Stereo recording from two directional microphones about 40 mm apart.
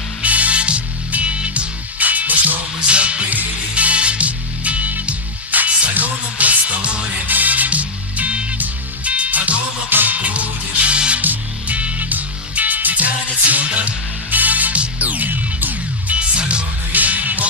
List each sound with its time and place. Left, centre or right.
0.2 s music: right
2.0 s music: right
2.9 s music: right
9.8 s music: right
10.1 s music: right
16.2 s music: right
16.9 s music: right